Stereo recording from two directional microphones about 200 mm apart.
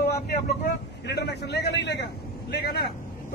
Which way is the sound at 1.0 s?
55° left (ahead or behind).